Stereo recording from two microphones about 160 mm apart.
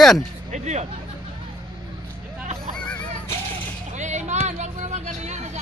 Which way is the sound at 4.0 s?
45° right (ahead or behind).